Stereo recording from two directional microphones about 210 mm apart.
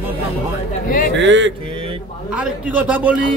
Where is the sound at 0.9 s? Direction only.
45° left (ahead or behind).